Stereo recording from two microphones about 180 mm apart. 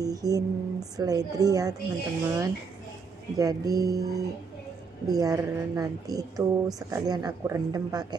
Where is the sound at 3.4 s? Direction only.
20° right (ahead or behind).